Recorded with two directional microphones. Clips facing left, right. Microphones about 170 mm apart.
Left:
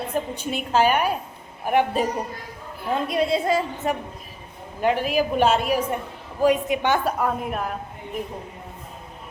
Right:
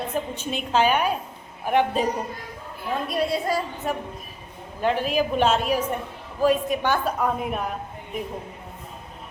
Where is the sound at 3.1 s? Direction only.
20° left (ahead or behind).